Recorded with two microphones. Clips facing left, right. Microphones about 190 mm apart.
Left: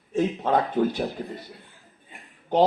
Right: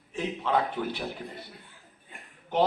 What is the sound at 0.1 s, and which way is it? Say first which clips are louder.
A man's voice: left 5 dB; 45° left (ahead or behind).